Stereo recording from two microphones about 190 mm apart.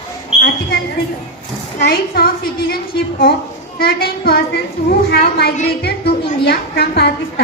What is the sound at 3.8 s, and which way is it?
A woman's voice, 55° left (ahead or behind).